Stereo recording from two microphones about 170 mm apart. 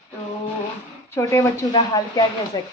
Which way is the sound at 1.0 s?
15° left (ahead or behind).